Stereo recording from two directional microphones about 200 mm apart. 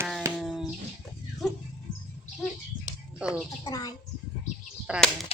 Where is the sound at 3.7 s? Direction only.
20° left (ahead or behind).